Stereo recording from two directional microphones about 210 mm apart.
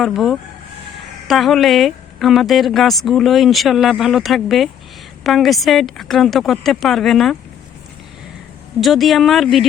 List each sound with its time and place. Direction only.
0.0 s a woman's voice: centre (ahead or behind)
8.8 s a woman's voice: centre (ahead or behind)